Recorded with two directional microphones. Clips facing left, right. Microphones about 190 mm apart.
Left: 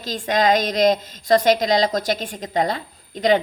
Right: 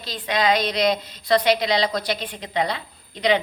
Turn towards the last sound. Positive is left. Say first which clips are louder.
# left 3 dB
turn(degrees=45)  # may be behind; listen again after turning